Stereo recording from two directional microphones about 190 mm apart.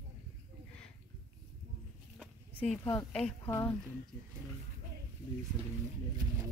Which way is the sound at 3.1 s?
5° left (ahead or behind).